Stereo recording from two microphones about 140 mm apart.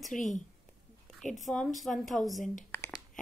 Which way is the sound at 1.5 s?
5° left (ahead or behind).